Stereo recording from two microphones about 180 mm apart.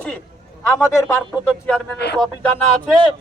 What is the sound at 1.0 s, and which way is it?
Speech, 5° left (ahead or behind).